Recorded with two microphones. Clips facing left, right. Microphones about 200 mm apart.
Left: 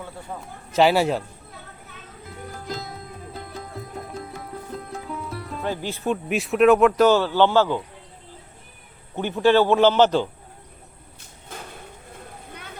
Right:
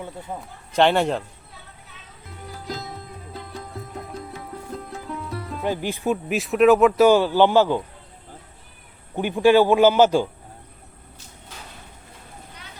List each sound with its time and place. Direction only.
0.7 s a man's voice: 5° left (ahead or behind)
2.6 s music: centre (ahead or behind)
5.6 s speech: 15° right (ahead or behind)
6.2 s speech: centre (ahead or behind)
9.1 s speech: 15° right (ahead or behind)
12.5 s a sound: 55° left (ahead or behind)